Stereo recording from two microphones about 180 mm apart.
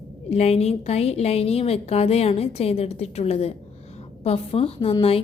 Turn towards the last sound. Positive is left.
turn(degrees=30)  # may be behind; listen again after turning